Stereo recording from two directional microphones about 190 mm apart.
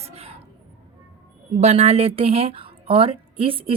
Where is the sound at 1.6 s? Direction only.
35° right (ahead or behind).